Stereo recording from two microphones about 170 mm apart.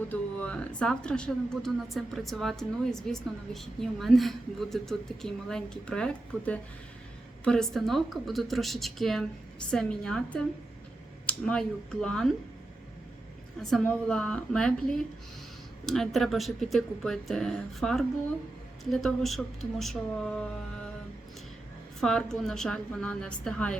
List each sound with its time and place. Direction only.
0.1 s speech: 10° left (ahead or behind)
13.6 s speech: 5° left (ahead or behind)
22.0 s speech: 5° left (ahead or behind)